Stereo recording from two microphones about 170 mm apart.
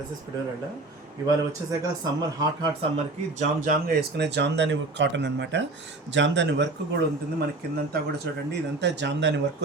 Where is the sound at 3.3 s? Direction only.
50° right (ahead or behind).